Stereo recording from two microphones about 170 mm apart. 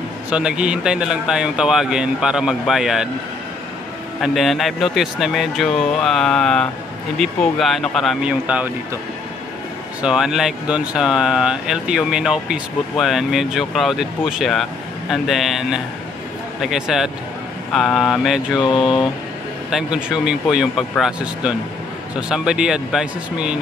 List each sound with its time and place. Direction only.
0.3 s speech: 5° right (ahead or behind)
4.2 s speech: centre (ahead or behind)
10.0 s speech: 5° right (ahead or behind)
18.6 s speech: 25° left (ahead or behind)
19.7 s speech: 5° right (ahead or behind)